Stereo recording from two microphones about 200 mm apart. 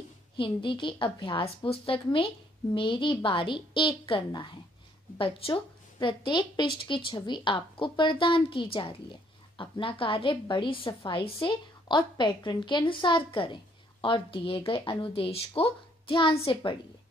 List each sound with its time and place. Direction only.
0.4 s a woman's voice: 25° left (ahead or behind)